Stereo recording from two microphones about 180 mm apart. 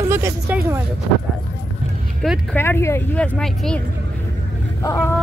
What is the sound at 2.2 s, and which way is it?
Speech, centre (ahead or behind).